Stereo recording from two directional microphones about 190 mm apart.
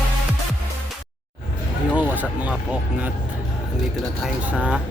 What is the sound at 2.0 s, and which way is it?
Music, 10° right (ahead or behind).